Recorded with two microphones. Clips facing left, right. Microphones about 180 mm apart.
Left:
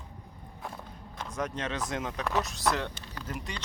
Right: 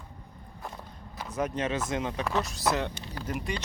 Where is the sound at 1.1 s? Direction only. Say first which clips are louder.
Right 4 dB; 10° right (ahead or behind).